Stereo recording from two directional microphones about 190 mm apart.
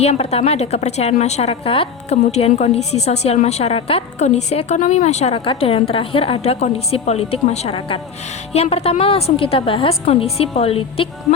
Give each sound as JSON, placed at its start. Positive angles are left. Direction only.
{"t": 0.0, "sound": "a woman's voice", "side_deg": 35}